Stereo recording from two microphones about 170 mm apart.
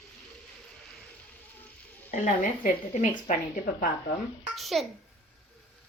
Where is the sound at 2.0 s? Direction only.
50° left (ahead or behind).